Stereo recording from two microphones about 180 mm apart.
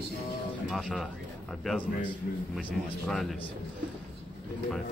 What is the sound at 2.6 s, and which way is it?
Speech, 5° left (ahead or behind).